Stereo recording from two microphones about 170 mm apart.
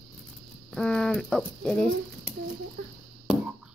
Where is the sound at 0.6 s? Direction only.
5° left (ahead or behind).